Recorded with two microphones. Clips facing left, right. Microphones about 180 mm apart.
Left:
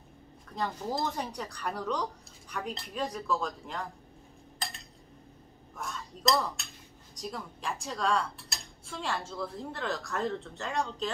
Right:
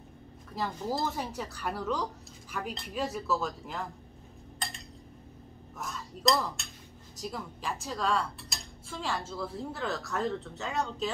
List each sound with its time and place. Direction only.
0.5 s speech: 5° right (ahead or behind)
5.8 s speech: centre (ahead or behind)